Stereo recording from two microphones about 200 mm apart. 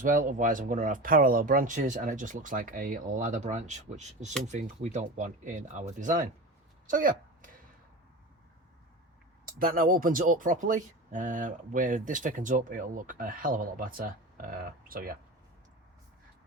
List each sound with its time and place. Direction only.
0.0 s speech: 40° right (ahead or behind)
6.8 s a sound: 45° right (ahead or behind)
9.6 s speech: 45° right (ahead or behind)